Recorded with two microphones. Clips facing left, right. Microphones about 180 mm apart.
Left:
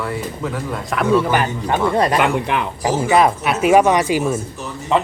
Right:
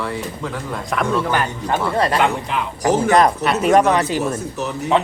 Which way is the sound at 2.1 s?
60° left (ahead or behind).